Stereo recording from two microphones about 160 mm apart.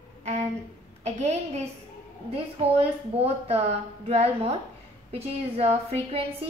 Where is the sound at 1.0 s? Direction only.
45° right (ahead or behind).